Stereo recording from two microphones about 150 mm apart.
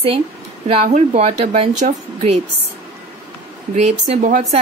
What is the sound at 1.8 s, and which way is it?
Speech, 60° right (ahead or behind).